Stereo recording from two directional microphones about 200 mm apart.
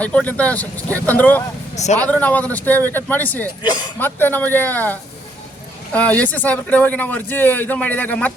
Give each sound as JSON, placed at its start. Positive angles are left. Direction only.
{"t": 0.0, "sound": "speech", "side_deg": 5}
{"t": 1.7, "sound": "speech", "side_deg": 35}
{"t": 2.0, "sound": "speech", "side_deg": 5}